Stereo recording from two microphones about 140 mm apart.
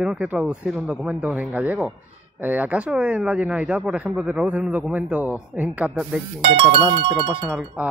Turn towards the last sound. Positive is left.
turn(degrees=-5)  # may be behind; listen again after turning